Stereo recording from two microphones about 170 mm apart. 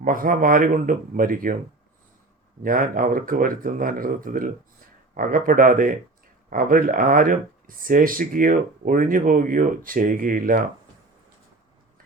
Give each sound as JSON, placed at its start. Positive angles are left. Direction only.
{"t": 0.0, "sound": "speech", "side_deg": -55}
{"t": 2.6, "sound": "speech", "side_deg": -55}